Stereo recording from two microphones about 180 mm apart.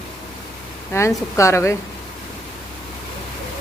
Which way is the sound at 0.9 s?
15° left (ahead or behind).